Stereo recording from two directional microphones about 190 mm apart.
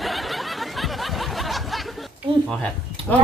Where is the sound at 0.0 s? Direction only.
Centre (ahead or behind).